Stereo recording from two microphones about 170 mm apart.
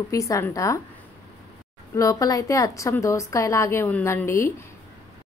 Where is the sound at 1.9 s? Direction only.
20° left (ahead or behind).